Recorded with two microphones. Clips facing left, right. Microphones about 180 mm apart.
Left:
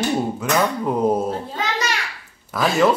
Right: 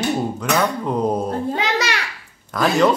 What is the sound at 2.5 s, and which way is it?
Speech, 5° left (ahead or behind).